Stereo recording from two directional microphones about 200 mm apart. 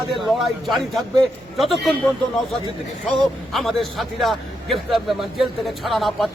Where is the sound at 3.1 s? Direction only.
Centre (ahead or behind).